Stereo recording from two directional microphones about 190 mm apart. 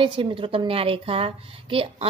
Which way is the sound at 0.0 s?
25° right (ahead or behind).